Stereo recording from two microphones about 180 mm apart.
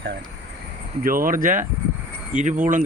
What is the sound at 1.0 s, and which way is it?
Speech, 50° right (ahead or behind).